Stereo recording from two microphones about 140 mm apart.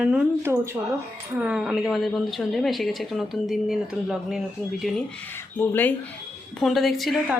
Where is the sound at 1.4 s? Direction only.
5° right (ahead or behind).